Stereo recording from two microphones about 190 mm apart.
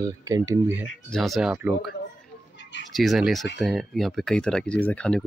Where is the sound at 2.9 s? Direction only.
Centre (ahead or behind).